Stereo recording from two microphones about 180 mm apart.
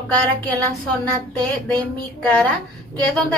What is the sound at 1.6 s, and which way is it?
Speech, 5° left (ahead or behind).